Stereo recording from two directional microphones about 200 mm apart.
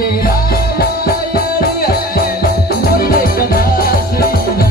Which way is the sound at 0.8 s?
50° left (ahead or behind).